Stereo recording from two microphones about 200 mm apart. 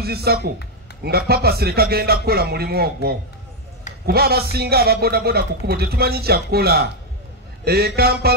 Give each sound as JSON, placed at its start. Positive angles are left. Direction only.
{"t": 0.0, "sound": "a man's voice", "side_deg": -50}